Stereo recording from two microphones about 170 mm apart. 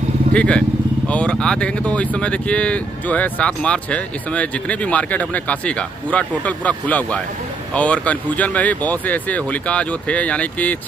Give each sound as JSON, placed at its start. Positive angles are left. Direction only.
{"t": 0.3, "sound": "speech", "side_deg": 5}